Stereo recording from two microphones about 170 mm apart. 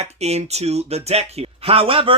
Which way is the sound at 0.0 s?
40° right (ahead or behind).